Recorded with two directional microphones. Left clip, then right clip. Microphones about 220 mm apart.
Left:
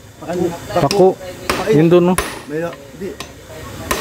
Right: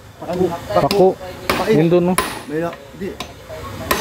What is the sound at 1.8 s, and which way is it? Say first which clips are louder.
Hammer: left 3 dB; 25° left (ahead or behind).